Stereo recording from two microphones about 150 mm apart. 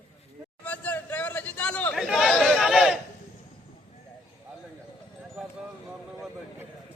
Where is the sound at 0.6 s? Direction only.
10° left (ahead or behind).